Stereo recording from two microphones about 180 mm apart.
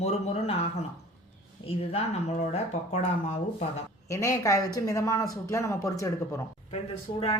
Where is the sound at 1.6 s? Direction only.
35° left (ahead or behind).